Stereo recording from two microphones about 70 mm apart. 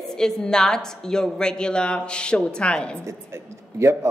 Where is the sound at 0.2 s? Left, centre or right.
Centre.